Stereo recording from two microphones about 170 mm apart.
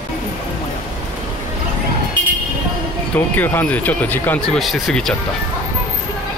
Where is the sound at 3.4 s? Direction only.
10° left (ahead or behind).